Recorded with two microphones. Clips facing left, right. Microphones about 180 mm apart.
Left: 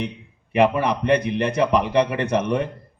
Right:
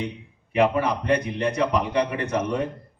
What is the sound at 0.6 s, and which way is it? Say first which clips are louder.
A man's voice: left 2 dB; 75° left (ahead or behind).